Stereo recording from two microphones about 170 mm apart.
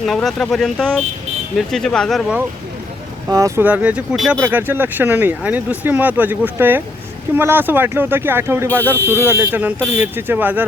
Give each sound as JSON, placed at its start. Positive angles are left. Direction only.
{"t": 0.0, "sound": "speech", "side_deg": 0}
{"t": 3.2, "sound": "speech", "side_deg": -20}
{"t": 8.8, "sound": "speech", "side_deg": 10}
{"t": 9.2, "sound": "speech", "side_deg": -15}